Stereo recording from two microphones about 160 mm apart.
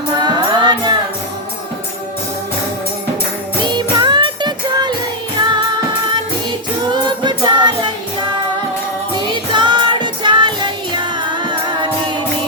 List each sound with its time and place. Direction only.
0.2 s music: 30° right (ahead or behind)
3.6 s music: 30° right (ahead or behind)
6.9 s music: 25° right (ahead or behind)
9.1 s music: 30° right (ahead or behind)